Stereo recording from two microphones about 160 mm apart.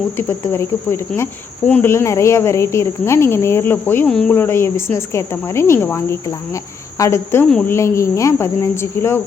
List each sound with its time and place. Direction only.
0.2 s speech: 15° left (ahead or behind)